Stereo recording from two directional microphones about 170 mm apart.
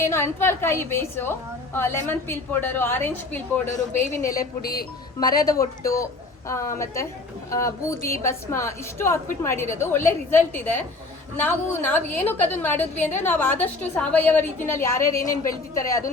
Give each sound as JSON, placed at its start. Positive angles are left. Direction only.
{"t": 0.0, "sound": "a woman's voice", "side_deg": 15}